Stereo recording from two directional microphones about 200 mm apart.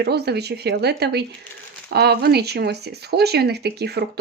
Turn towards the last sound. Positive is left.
turn(degrees=-55)  # may be behind; listen again after turning